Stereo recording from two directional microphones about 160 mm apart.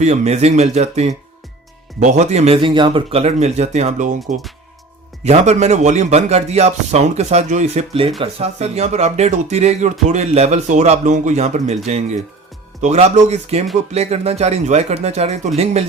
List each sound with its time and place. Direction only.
0.0 s speech: 45° right (ahead or behind)
5.2 s speech: 45° right (ahead or behind)